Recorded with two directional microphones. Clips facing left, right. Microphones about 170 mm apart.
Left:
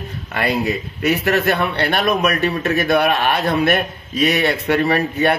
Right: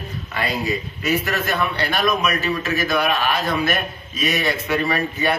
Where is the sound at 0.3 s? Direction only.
60° left (ahead or behind).